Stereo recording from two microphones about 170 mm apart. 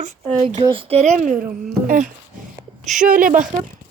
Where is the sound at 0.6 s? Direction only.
30° right (ahead or behind).